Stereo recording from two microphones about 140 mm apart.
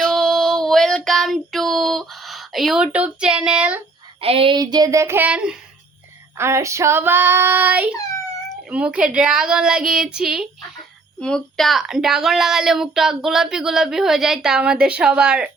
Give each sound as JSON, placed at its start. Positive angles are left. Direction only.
{"t": 0.0, "sound": "child singing", "side_deg": 0}
{"t": 4.2, "sound": "child singing", "side_deg": -40}
{"t": 6.3, "sound": "female singing", "side_deg": -20}
{"t": 8.7, "sound": "speech", "side_deg": -10}